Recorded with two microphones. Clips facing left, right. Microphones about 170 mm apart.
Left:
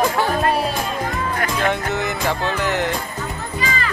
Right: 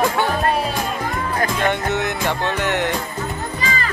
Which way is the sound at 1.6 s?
Centre (ahead or behind).